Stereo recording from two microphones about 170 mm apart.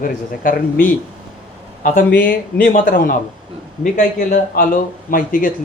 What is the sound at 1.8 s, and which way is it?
Speech, 45° left (ahead or behind).